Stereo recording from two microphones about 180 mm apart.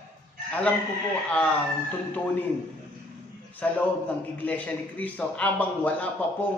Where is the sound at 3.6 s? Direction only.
10° left (ahead or behind).